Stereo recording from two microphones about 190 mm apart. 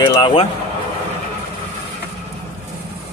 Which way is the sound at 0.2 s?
30° left (ahead or behind).